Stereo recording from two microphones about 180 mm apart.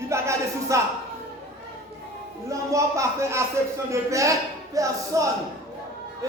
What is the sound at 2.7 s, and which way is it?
Speech, 15° right (ahead or behind).